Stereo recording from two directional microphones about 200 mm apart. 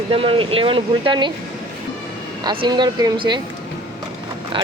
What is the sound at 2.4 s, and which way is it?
Speech, 25° right (ahead or behind).